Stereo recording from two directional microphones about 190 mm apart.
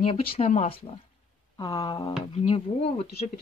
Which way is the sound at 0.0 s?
30° left (ahead or behind).